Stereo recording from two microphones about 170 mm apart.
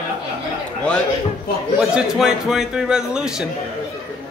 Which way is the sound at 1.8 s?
5° right (ahead or behind).